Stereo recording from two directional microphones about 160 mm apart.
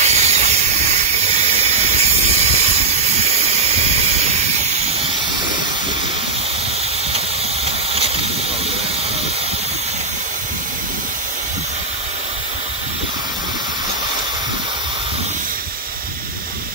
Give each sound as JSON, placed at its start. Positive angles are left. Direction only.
{"t": 0.0, "sound": "hiss", "side_deg": -45}
{"t": 1.5, "sound": "steam", "side_deg": -40}
{"t": 7.6, "sound": "vehicle", "side_deg": -40}